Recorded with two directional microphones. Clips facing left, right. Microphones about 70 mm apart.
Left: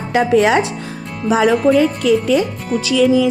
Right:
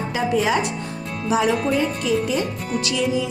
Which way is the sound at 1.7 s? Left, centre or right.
Left.